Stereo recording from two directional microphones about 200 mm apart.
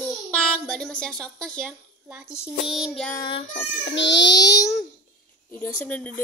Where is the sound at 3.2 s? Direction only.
25° left (ahead or behind).